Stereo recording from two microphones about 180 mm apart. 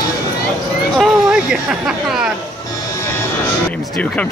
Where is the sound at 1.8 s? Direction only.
Centre (ahead or behind).